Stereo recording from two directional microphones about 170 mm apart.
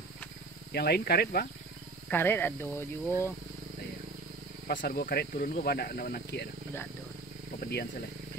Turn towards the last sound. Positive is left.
turn(degrees=70)  # may be behind; listen again after turning